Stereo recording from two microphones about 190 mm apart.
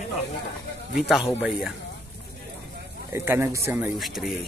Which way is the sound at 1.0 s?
5° right (ahead or behind).